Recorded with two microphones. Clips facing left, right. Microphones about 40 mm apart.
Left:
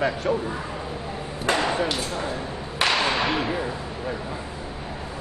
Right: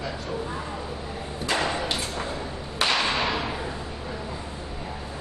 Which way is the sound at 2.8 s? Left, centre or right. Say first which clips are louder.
Left 2 dB; centre.